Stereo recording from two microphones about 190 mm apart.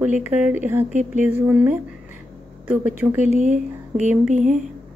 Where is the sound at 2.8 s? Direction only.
10° right (ahead or behind).